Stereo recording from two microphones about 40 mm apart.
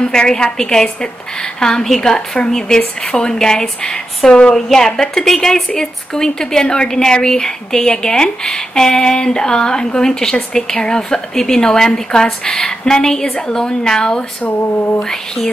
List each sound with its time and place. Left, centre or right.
0.0 s a woman's voice: centre
4.6 s a woman's voice: centre
14.4 s a sound: left
15.0 s a woman's voice: centre